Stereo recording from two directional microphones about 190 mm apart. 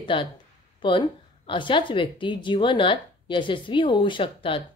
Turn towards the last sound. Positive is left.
turn(degrees=30)  # may be behind; listen again after turning